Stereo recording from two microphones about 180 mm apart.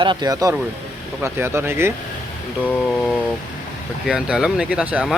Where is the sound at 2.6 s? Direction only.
5° left (ahead or behind).